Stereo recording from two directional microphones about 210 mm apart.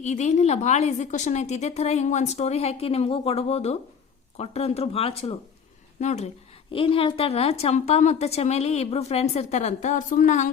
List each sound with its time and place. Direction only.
0.0 s a woman's voice: 35° left (ahead or behind)